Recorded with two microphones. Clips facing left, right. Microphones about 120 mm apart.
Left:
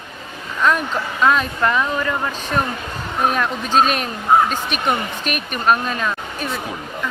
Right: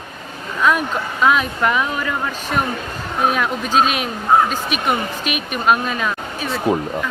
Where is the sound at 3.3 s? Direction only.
5° right (ahead or behind).